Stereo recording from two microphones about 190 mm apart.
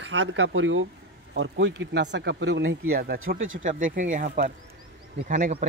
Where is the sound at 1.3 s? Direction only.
70° right (ahead or behind).